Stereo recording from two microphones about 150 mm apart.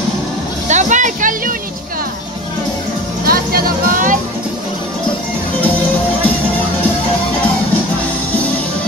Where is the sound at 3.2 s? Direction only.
80° right; by 4.2 s 65° right (ahead or behind).